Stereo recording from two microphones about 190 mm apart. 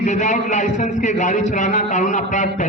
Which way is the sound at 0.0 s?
40° left (ahead or behind).